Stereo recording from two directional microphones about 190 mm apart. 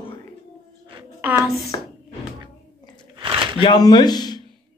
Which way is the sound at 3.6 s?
20° left (ahead or behind).